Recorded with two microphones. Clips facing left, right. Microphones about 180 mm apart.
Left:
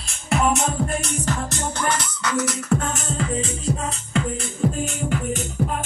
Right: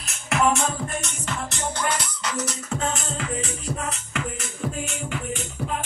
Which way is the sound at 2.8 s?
45° left (ahead or behind).